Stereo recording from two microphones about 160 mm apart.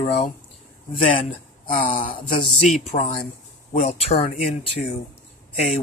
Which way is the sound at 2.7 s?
50° left (ahead or behind).